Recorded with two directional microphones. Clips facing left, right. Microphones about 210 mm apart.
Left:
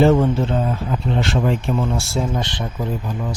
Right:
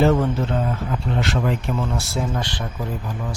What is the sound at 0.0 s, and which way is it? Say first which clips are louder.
Speech: left 3 dB; 25° left (ahead or behind).